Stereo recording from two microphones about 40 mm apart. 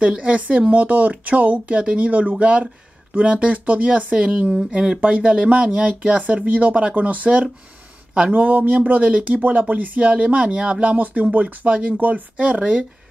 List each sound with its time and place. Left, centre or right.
0.1 s speech: right
0.4 s speech: right
8.3 s speech: right
10.8 s speech: right